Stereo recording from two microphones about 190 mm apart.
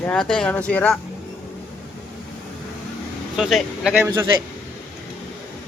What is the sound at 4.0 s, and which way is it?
Speech, 10° right (ahead or behind).